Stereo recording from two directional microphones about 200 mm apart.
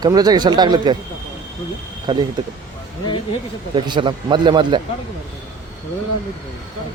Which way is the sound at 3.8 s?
25° right (ahead or behind).